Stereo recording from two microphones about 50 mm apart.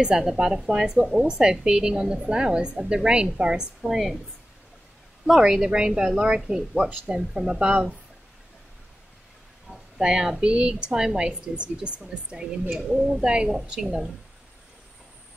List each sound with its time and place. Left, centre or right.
0.0 s a woman's voice: centre
3.9 s a woman's voice: centre
5.2 s a woman's voice: centre
9.7 s a sound: centre
10.4 s a woman's voice: right